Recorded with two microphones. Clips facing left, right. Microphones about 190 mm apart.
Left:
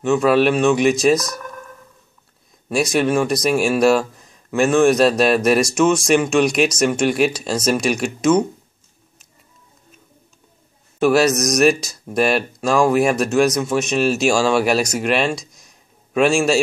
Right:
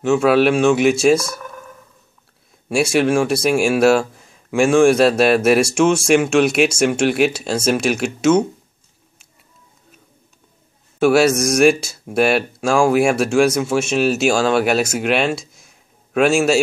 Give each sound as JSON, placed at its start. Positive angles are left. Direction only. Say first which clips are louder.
{"t": 0.0, "sound": "speech", "louder": "right 1 dB", "side_deg": -5}
{"t": 1.3, "sound": "a sound", "louder": "even", "side_deg": -10}
{"t": 2.7, "sound": "speech", "louder": "right 2 dB", "side_deg": -10}
{"t": 11.0, "sound": "speech", "louder": "right 2 dB", "side_deg": -10}